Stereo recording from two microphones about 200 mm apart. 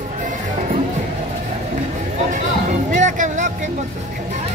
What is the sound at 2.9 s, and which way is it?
Music, 40° right (ahead or behind).